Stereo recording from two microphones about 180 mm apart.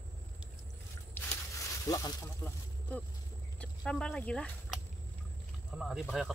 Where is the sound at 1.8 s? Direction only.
20° left (ahead or behind).